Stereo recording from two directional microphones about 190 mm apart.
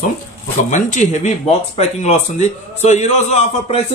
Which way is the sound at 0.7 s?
40° left (ahead or behind).